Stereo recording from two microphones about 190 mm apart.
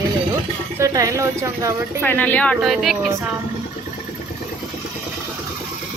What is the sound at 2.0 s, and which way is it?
Speech, 10° left (ahead or behind).